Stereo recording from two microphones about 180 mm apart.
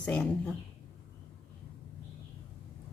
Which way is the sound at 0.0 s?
5° left (ahead or behind).